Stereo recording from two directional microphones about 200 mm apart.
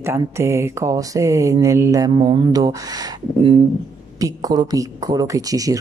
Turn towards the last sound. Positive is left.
turn(degrees=-15)  # may be behind; listen again after turning